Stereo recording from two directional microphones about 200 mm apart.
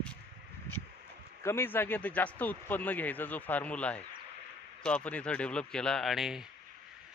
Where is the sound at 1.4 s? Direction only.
10° left (ahead or behind).